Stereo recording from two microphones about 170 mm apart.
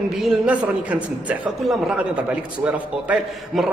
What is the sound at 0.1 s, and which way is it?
A man's voice, 5° right (ahead or behind).